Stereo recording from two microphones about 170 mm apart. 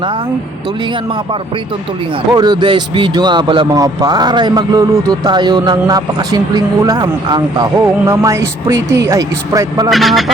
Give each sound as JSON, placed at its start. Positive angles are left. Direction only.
{"t": 2.3, "sound": "speech", "side_deg": -25}
{"t": 9.9, "sound": "a man's voice", "side_deg": 0}